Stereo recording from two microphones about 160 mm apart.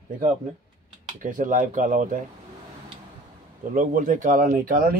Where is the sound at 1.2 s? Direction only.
55° right (ahead or behind).